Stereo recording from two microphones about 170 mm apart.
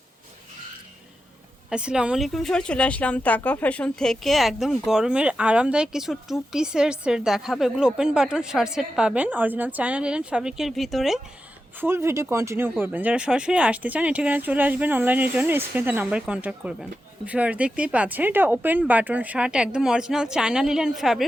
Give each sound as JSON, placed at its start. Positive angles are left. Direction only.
{"t": 1.7, "sound": "a woman's voice", "side_deg": -5}
{"t": 11.8, "sound": "speech", "side_deg": -15}